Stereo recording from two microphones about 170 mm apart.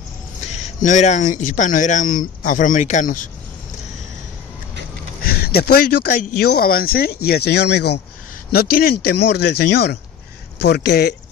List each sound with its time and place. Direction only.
0.5 s speech: 45° left (ahead or behind)
5.2 s a sound: 70° left (ahead or behind)
6.4 s speech: 65° left (ahead or behind)
8.5 s speech: 65° left (ahead or behind)